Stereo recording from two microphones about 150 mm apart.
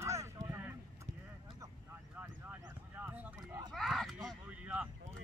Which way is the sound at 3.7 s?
Centre (ahead or behind).